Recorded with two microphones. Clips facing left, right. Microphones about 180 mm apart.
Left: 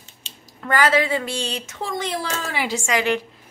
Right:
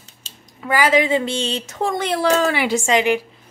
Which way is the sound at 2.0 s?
65° right (ahead or behind).